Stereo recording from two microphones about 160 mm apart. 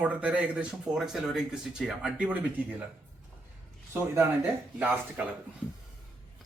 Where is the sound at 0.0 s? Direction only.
10° right (ahead or behind).